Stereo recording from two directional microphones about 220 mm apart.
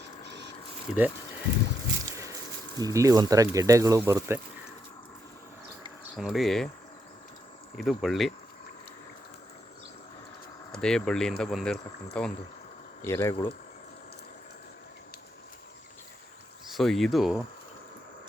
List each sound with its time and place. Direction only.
0.3 s a sound: 50° right (ahead or behind)
0.9 s speech: 5° right (ahead or behind)
2.1 s speech: 15° right (ahead or behind)
6.1 s speech: centre (ahead or behind)
7.9 s speech: centre (ahead or behind)
10.8 s speech: 5° left (ahead or behind)
16.6 s speech: centre (ahead or behind)